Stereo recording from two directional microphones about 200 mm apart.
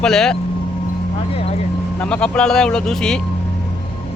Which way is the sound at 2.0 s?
5° left (ahead or behind).